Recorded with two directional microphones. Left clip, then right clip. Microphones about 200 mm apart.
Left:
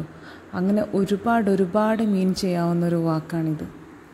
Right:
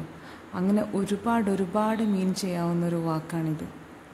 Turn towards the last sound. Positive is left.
turn(degrees=15)  # may be behind; listen again after turning